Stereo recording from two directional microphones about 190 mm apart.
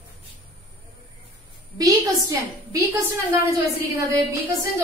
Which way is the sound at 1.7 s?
15° right (ahead or behind).